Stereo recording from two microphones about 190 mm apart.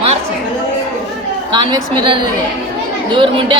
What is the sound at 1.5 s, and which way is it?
Speech, 25° right (ahead or behind).